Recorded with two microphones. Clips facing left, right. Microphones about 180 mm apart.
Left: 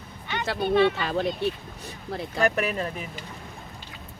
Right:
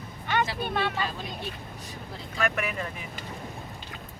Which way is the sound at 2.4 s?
35° left (ahead or behind).